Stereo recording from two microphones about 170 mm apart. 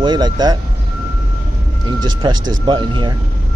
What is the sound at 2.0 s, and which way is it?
Speech, 25° right (ahead or behind).